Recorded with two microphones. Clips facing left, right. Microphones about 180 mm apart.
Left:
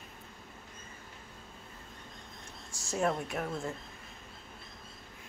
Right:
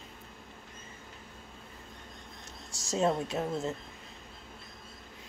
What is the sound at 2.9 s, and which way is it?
Speech, 20° right (ahead or behind).